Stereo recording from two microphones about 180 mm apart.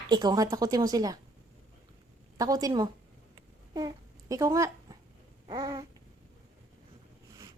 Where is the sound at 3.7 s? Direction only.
20° right (ahead or behind).